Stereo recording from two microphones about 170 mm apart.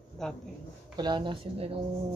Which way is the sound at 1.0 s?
25° right (ahead or behind).